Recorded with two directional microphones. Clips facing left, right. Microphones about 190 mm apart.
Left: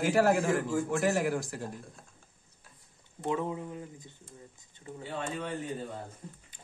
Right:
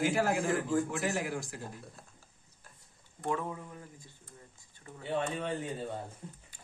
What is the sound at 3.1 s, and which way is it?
Speech, 20° left (ahead or behind).